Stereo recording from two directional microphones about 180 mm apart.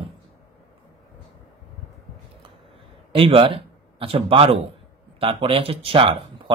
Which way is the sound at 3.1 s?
30° right (ahead or behind).